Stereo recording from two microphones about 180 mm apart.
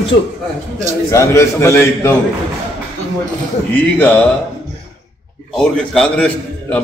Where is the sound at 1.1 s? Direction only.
15° left (ahead or behind).